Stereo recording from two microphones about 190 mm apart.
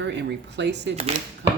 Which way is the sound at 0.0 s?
65° right (ahead or behind).